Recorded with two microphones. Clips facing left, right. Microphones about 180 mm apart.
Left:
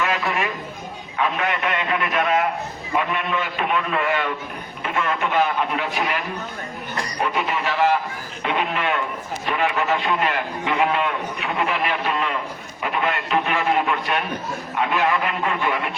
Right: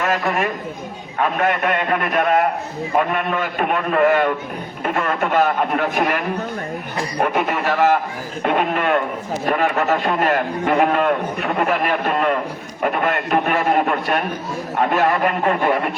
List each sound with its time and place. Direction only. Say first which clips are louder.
0.0 s a man's voice: right 3 dB; 45° right (ahead or behind)